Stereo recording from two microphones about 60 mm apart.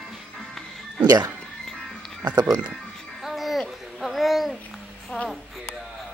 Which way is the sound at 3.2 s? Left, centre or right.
Centre.